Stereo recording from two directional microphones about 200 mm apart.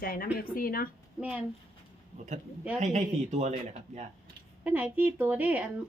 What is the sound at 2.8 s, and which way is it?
Speech, 35° right (ahead or behind).